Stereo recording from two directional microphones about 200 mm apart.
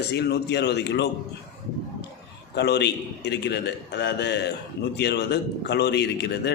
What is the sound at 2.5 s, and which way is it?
A man's voice, 60° left (ahead or behind).